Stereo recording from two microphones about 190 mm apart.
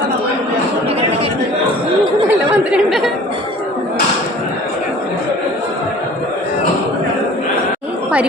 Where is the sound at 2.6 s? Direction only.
5° right (ahead or behind).